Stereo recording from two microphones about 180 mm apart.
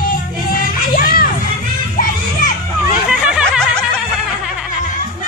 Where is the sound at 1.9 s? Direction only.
45° left (ahead or behind).